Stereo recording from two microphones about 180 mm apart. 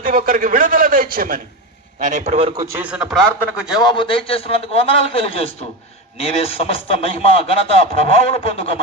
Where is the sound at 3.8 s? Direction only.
30° left (ahead or behind).